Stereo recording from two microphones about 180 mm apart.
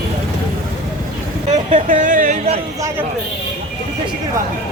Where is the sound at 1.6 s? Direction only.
45° right (ahead or behind).